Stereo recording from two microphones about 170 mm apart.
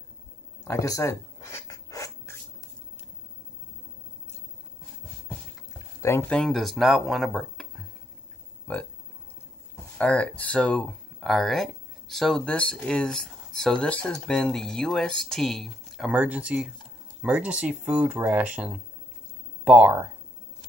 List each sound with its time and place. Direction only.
0.7 s a sound: 20° left (ahead or behind)
5.9 s speech: 15° left (ahead or behind)
9.9 s speech: 5° left (ahead or behind)